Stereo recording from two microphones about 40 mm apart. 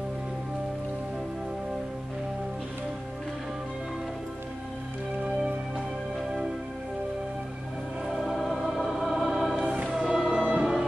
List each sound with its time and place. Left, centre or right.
8.3 s music: centre
9.9 s music: centre